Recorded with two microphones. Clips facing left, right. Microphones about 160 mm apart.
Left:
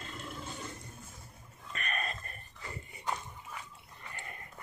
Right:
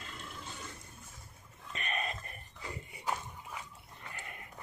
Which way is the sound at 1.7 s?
20° right (ahead or behind).